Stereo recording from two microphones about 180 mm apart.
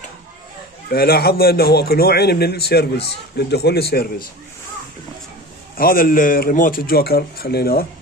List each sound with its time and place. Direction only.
0.8 s a man's voice: 55° left (ahead or behind)
5.8 s a man's voice: 50° left (ahead or behind)